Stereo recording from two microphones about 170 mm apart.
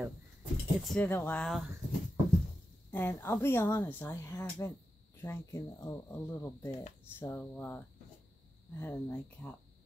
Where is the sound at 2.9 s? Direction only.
15° left (ahead or behind).